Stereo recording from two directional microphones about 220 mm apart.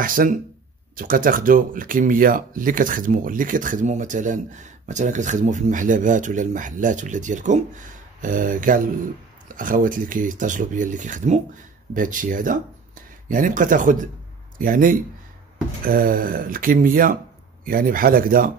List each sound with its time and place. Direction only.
0.0 s speech: 40° right (ahead or behind)